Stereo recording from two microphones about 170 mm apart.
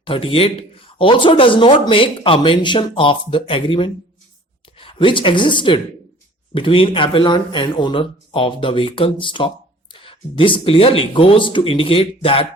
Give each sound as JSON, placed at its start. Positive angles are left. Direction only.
{"t": 0.0, "sound": "speech", "side_deg": 30}